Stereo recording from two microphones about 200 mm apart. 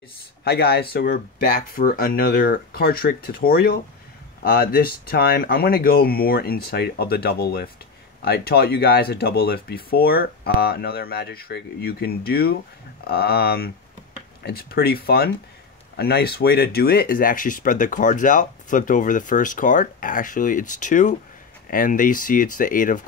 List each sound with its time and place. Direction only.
0.4 s speech: 50° left (ahead or behind)